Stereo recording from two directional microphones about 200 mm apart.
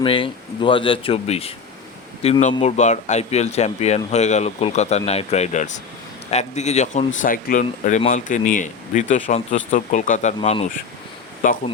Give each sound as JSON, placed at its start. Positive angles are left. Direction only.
{"t": 0.0, "sound": "speech", "side_deg": 25}